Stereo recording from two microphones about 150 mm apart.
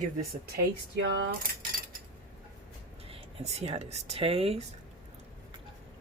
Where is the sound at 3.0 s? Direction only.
40° right (ahead or behind).